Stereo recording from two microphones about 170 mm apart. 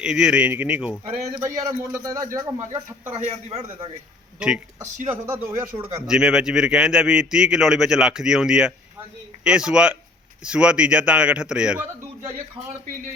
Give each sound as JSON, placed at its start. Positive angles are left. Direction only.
{"t": 0.0, "sound": "a man's voice", "side_deg": -5}
{"t": 1.5, "sound": "speech", "side_deg": -20}
{"t": 3.2, "sound": "a man's voice", "side_deg": -40}
{"t": 4.4, "sound": "speech", "side_deg": -5}
{"t": 5.5, "sound": "a man's voice", "side_deg": -30}
{"t": 6.1, "sound": "a man's voice", "side_deg": -5}